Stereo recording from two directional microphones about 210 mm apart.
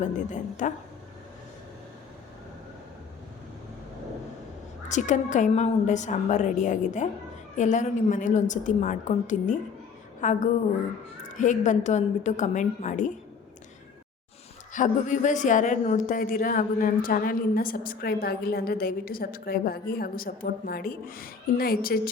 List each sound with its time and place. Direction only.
0.0 s a woman's voice: 35° left (ahead or behind)
4.9 s a woman's voice: 35° left (ahead or behind)
14.7 s a woman's voice: 35° left (ahead or behind)